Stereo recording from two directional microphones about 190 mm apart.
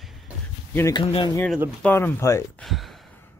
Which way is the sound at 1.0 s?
25° left (ahead or behind).